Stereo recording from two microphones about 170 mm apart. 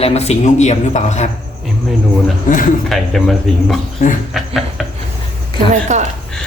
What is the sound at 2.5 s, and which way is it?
Speech, 55° left (ahead or behind).